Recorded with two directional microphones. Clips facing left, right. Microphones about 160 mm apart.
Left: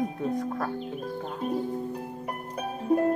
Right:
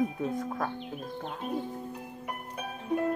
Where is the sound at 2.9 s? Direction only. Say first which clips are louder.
Left 6 dB; 40° left (ahead or behind).